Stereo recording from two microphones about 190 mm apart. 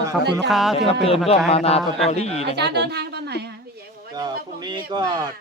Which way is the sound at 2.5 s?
60° right (ahead or behind).